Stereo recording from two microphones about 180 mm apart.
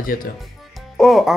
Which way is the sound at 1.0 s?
Centre (ahead or behind).